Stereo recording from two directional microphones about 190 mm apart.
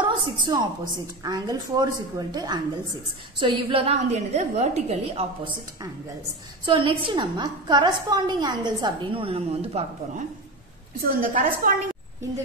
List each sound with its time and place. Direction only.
0.0 s a woman's voice: 25° right (ahead or behind)
6.6 s a woman's voice: 25° right (ahead or behind)
11.1 s a woman's voice: 45° right (ahead or behind)